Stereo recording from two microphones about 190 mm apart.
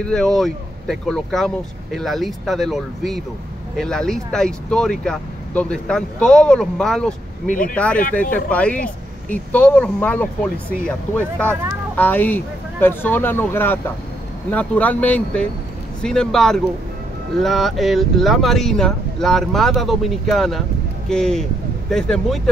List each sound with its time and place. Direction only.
0.0 s speech: 5° left (ahead or behind)
7.4 s speech: 45° left (ahead or behind)
7.7 s speech: 5° left (ahead or behind)